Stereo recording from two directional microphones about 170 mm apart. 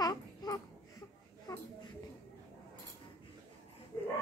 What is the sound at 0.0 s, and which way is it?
Babbling, 20° left (ahead or behind).